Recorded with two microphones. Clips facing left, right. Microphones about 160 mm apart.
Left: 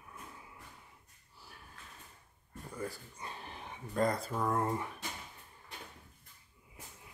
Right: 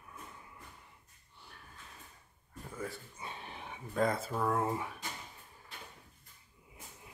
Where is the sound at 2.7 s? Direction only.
Centre (ahead or behind).